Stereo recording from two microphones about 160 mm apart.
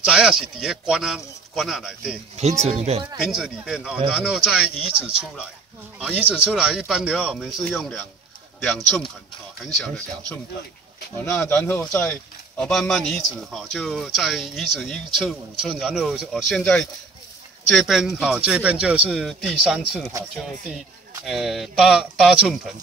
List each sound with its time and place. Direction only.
0.0 s speech: 5° right (ahead or behind)
2.6 s speech: 40° right (ahead or behind)
3.2 s speech: 5° right (ahead or behind)